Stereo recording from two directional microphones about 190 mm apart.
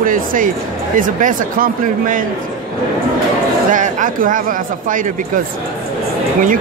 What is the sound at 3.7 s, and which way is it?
Speech, 40° right (ahead or behind).